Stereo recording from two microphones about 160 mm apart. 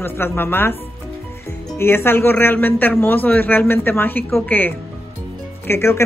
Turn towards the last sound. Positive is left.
turn(degrees=15)  # may be behind; listen again after turning